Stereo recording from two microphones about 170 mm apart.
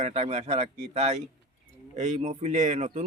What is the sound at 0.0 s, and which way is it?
A man's voice, 40° right (ahead or behind).